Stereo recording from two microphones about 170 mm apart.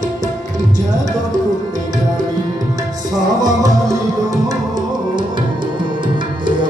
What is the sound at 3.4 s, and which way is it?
Tabla, 20° right (ahead or behind).